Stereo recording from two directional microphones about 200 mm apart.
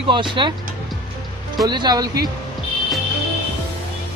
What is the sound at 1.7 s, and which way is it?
Speech, 20° right (ahead or behind).